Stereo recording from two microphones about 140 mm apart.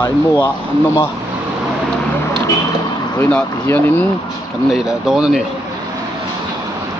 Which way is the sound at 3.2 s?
10° left (ahead or behind).